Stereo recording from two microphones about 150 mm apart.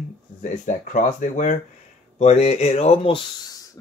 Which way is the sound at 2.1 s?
45° left (ahead or behind).